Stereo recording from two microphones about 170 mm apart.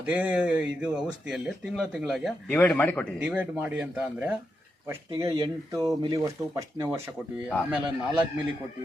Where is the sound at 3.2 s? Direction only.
10° right (ahead or behind).